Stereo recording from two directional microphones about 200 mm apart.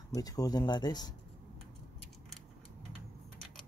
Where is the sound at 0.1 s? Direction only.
20° left (ahead or behind).